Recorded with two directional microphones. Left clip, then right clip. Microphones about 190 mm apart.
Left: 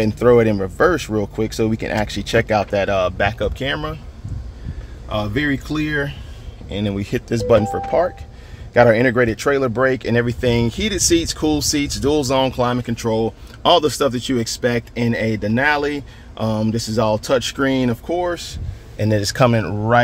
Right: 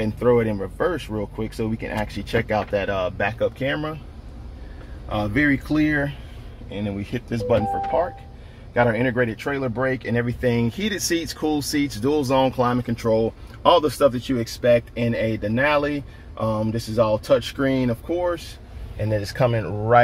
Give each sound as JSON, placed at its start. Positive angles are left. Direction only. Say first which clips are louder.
{"t": 0.0, "sound": "speech", "louder": "left 6 dB", "side_deg": 55}
{"t": 5.1, "sound": "speech", "louder": "even", "side_deg": 15}
{"t": 6.7, "sound": "speech", "louder": "left 6 dB", "side_deg": 60}
{"t": 10.4, "sound": "speech", "louder": "left 4 dB", "side_deg": 35}